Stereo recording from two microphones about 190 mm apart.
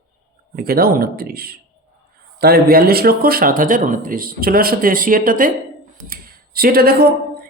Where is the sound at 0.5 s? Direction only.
50° right (ahead or behind).